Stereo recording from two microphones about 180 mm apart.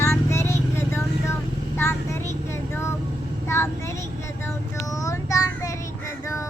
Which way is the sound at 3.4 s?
15° left (ahead or behind).